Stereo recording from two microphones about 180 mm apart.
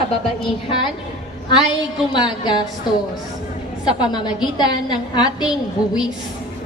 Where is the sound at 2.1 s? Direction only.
25° left (ahead or behind).